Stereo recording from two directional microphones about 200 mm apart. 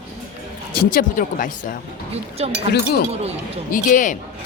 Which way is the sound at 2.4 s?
30° right (ahead or behind).